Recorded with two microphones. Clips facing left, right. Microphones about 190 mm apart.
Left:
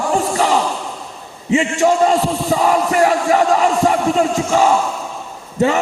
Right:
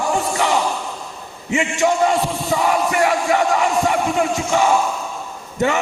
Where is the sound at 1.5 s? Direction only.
30° left (ahead or behind).